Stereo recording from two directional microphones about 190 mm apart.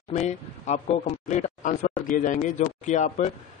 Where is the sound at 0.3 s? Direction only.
35° left (ahead or behind).